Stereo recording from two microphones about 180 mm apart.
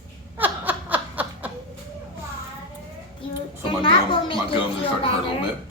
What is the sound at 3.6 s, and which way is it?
Speech, 30° left (ahead or behind).